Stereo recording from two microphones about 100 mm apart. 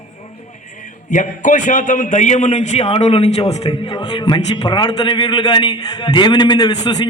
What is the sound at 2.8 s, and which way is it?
Speech, 90° left.